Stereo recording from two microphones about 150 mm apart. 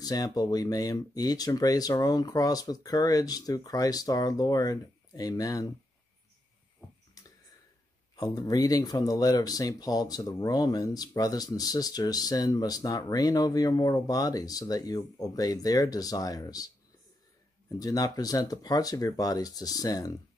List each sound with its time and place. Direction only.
0.0 s speech: 25° left (ahead or behind)
7.2 s a sound: 25° left (ahead or behind)
8.2 s speech: 25° left (ahead or behind)
17.7 s speech: 25° left (ahead or behind)